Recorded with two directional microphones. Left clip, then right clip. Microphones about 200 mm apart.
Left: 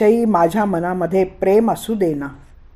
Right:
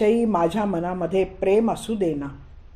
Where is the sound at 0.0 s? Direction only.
35° left (ahead or behind).